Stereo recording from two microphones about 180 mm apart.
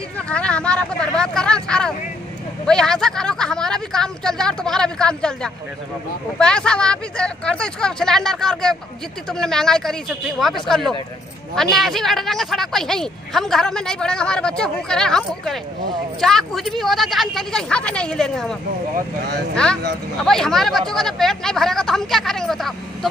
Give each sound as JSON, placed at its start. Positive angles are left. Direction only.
{"t": 0.3, "sound": "speech", "side_deg": 5}
{"t": 18.9, "sound": "speech", "side_deg": -65}
{"t": 19.5, "sound": "speech", "side_deg": 5}